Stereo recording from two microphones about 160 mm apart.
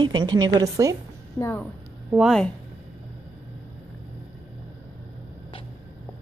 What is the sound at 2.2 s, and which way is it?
Speech, centre (ahead or behind).